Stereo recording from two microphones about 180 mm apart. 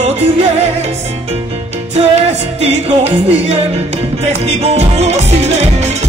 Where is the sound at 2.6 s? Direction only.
35° right (ahead or behind).